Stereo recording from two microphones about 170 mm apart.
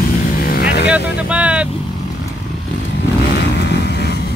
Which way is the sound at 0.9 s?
5° right (ahead or behind).